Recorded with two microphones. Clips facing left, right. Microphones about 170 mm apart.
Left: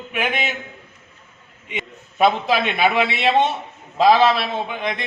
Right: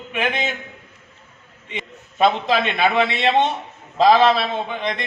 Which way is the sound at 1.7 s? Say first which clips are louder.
Left 1 dB; 5° left (ahead or behind).